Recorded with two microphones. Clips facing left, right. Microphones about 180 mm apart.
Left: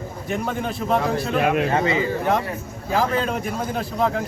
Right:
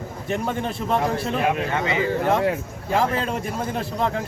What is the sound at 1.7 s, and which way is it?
Speech, 35° left (ahead or behind).